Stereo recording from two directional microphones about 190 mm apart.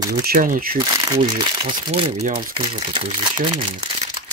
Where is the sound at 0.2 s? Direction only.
50° right (ahead or behind).